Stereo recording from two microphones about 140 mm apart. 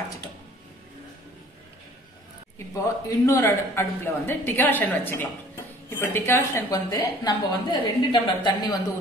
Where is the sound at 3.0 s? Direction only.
20° left (ahead or behind).